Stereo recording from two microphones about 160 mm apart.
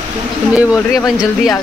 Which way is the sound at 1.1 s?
5° right (ahead or behind).